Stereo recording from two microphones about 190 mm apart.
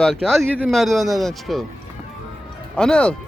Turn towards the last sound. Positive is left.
turn(degrees=5)  # may be behind; listen again after turning